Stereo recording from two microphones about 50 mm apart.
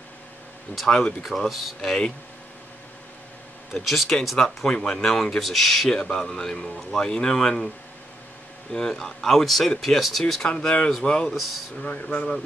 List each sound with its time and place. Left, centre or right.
0.8 s speech: centre
3.7 s speech: centre
5.9 s speech: centre
8.7 s speech: centre
10.5 s speech: left
11.2 s speech: centre
11.8 s speech: left